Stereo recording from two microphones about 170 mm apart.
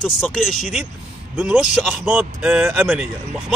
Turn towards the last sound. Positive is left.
turn(degrees=-10)  # may be behind; listen again after turning